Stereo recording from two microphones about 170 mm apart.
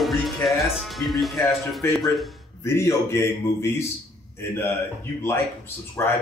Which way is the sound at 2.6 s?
15° left (ahead or behind).